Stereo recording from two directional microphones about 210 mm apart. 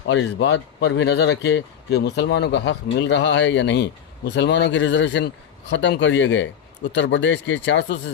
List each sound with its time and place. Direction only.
0.1 s speech: 60° left (ahead or behind)